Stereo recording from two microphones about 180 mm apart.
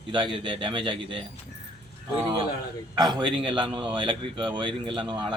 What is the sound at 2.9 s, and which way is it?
A man's voice, 25° right (ahead or behind).